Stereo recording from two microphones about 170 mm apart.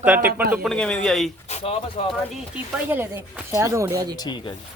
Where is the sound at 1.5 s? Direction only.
35° left (ahead or behind).